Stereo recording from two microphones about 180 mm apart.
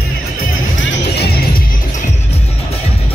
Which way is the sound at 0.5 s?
90° left.